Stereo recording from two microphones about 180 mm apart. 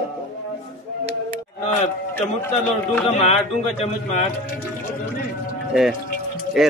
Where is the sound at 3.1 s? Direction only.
35° left (ahead or behind).